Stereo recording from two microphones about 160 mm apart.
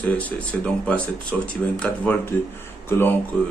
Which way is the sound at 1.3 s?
5° left (ahead or behind).